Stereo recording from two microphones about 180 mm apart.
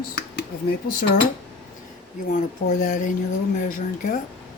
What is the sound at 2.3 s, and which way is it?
Speech, 45° left (ahead or behind).